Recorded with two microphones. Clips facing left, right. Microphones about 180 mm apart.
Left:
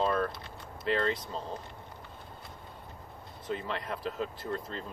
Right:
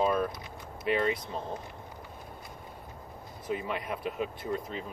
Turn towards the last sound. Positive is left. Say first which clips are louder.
# right 2 dB
turn(degrees=-10)  # may be behind; listen again after turning